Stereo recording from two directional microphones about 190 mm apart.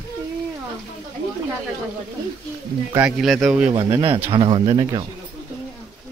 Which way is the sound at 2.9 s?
5° right (ahead or behind).